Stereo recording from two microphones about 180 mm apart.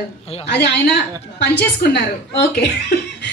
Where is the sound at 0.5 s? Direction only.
70° left (ahead or behind).